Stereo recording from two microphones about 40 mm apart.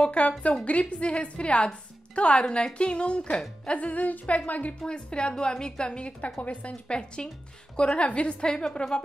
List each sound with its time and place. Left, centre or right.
0.0 s humming: left
1.2 s a woman's voice: left
3.7 s humming: left
4.8 s a woman's voice: left
5.9 s a woman's voice: left
6.4 s humming: left
6.7 s a woman's voice: left